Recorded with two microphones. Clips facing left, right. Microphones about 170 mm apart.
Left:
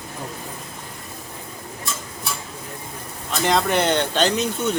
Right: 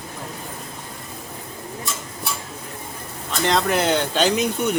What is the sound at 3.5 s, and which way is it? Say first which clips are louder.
Speech: even; centre (ahead or behind).